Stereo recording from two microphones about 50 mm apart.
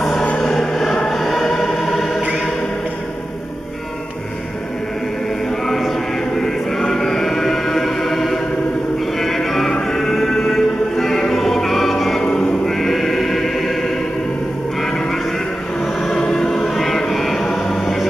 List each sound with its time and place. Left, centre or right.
0.4 s music: centre
5.8 s choir: centre
9.2 s music: centre
12.2 s choir: centre
16.0 s choir: centre